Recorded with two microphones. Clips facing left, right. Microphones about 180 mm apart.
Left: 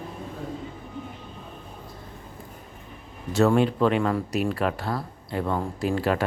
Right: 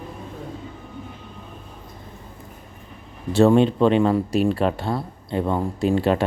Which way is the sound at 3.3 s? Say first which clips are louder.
Right 5 dB; 30° right (ahead or behind).